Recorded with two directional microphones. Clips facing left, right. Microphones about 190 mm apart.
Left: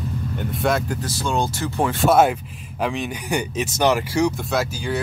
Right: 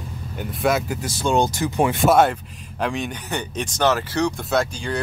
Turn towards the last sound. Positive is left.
turn(degrees=5)  # may be behind; listen again after turning